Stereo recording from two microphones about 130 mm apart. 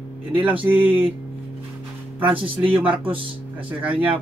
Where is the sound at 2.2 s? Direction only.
45° right (ahead or behind).